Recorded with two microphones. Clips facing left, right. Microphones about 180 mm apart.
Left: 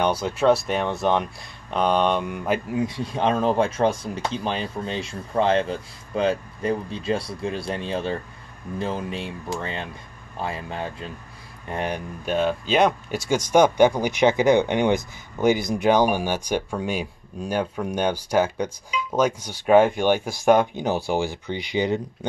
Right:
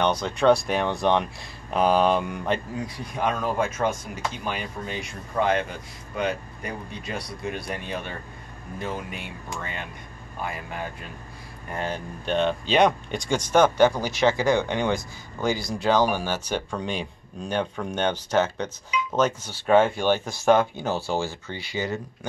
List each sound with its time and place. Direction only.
0.0 s speech: 10° left (ahead or behind)
2.7 s speech: 25° left (ahead or behind)
12.3 s speech: 5° left (ahead or behind)